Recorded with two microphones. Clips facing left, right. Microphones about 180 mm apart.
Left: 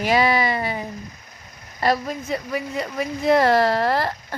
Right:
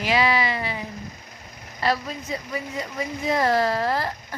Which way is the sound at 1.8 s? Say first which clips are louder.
Left 3 dB; 45° left (ahead or behind).